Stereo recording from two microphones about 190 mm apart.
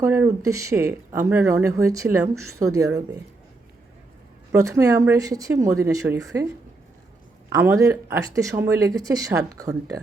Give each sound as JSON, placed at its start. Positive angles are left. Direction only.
{"t": 0.0, "sound": "speech", "side_deg": -15}
{"t": 4.5, "sound": "speech", "side_deg": -15}
{"t": 7.5, "sound": "speech", "side_deg": -15}